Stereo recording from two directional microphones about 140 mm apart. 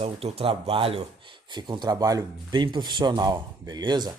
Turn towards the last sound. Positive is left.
turn(degrees=-30)  # may be behind; listen again after turning